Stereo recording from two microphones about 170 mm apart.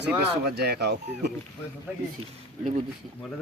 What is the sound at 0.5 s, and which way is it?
Speech, 75° right (ahead or behind).